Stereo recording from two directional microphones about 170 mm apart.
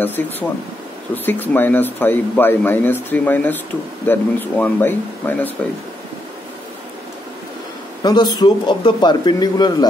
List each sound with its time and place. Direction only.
0.0 s speech: 10° left (ahead or behind)
8.0 s speech: 25° left (ahead or behind)